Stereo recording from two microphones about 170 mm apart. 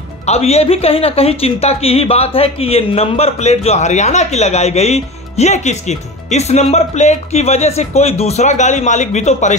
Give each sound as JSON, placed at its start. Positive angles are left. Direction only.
{"t": 0.3, "sound": "speech", "side_deg": 40}